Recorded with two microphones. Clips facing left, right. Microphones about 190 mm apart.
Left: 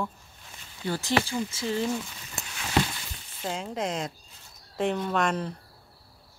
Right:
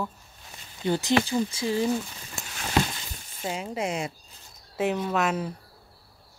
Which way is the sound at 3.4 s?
5° right (ahead or behind).